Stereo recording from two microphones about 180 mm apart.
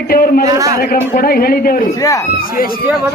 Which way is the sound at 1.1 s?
55° left (ahead or behind).